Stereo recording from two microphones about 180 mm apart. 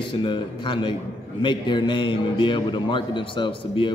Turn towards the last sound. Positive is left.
turn(degrees=25)  # may be behind; listen again after turning